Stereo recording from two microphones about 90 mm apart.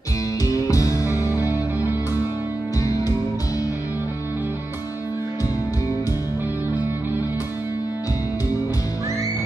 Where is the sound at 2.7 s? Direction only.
40° left (ahead or behind).